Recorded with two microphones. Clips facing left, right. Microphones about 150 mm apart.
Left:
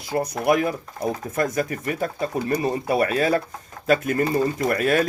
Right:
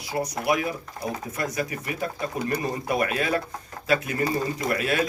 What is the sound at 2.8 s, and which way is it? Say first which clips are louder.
Speech: left 4 dB; 30° left (ahead or behind).